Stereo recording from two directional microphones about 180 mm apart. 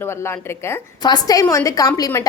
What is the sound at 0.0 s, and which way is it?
A woman's voice, 15° left (ahead or behind).